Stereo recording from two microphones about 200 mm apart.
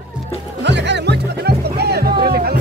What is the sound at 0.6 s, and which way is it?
Music, 60° right (ahead or behind).